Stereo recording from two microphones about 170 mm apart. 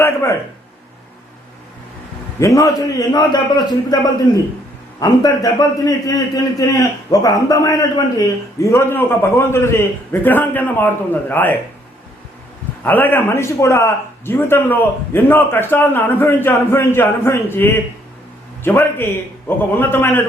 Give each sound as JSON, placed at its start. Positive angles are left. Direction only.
{"t": 0.0, "sound": "a sound", "side_deg": 15}
{"t": 2.4, "sound": "a man's voice", "side_deg": 20}
{"t": 4.9, "sound": "a man's voice", "side_deg": 20}
{"t": 12.8, "sound": "a man's voice", "side_deg": 10}